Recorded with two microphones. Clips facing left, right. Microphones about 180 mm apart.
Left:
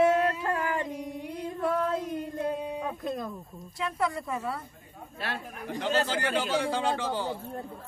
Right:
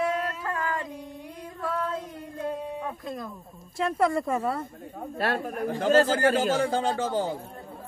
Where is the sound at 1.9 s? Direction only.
15° left (ahead or behind).